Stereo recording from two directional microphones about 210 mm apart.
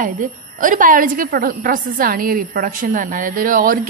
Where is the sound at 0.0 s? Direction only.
40° right (ahead or behind).